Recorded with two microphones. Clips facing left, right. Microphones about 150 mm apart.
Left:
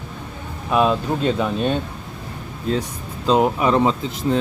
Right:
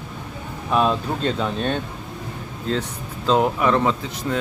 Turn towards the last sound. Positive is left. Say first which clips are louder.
# left 4 dB
turn(degrees=25)  # may be behind; listen again after turning